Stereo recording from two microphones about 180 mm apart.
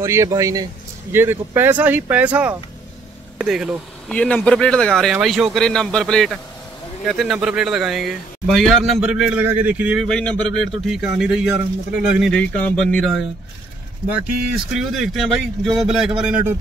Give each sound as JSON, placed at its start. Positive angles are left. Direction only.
{"t": 0.0, "sound": "speech", "side_deg": -15}
{"t": 10.0, "sound": "speech", "side_deg": 5}
{"t": 12.4, "sound": "speech", "side_deg": 10}
{"t": 14.7, "sound": "speech", "side_deg": 0}